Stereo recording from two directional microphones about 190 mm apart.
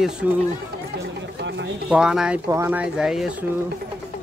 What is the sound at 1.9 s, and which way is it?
Speech, 5° right (ahead or behind).